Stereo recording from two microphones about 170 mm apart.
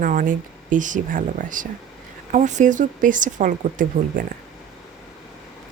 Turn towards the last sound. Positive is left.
turn(degrees=-50)  # may be behind; listen again after turning